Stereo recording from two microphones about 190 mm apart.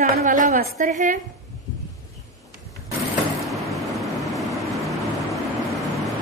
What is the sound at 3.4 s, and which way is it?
Vehicle, centre (ahead or behind).